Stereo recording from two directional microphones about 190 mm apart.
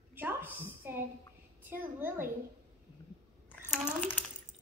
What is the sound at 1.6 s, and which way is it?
Speech, 10° right (ahead or behind).